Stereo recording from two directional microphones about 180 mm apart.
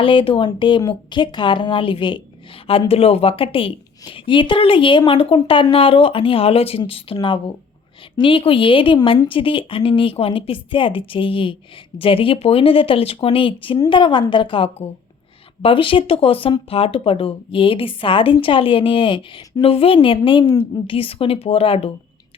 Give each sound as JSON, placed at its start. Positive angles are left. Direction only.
{"t": 0.0, "sound": "speech", "side_deg": 30}